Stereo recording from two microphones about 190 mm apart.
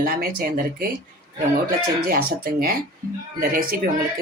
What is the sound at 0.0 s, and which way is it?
Speech, 50° right (ahead or behind).